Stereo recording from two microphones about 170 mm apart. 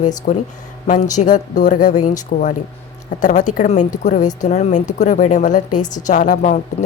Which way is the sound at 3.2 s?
45° left (ahead or behind).